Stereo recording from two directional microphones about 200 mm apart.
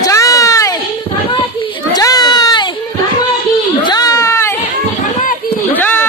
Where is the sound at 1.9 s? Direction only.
20° left (ahead or behind).